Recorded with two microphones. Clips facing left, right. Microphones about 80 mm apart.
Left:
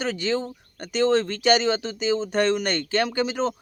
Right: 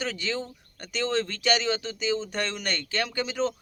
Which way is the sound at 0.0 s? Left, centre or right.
Left.